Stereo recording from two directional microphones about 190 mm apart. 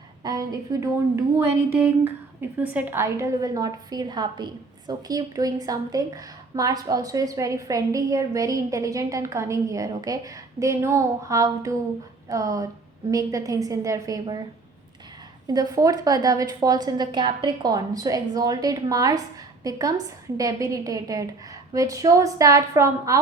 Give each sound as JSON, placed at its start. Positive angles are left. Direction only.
{"t": 0.2, "sound": "a woman's voice", "side_deg": -20}
{"t": 2.6, "sound": "a woman's voice", "side_deg": -10}
{"t": 15.4, "sound": "a woman's voice", "side_deg": -20}
{"t": 20.3, "sound": "a woman's voice", "side_deg": -20}